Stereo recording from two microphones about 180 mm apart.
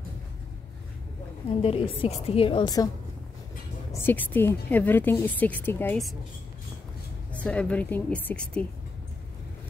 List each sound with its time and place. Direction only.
1.6 s a woman's voice: 30° left (ahead or behind)
3.9 s a woman's voice: 10° left (ahead or behind)
7.3 s a woman's voice: 5° left (ahead or behind)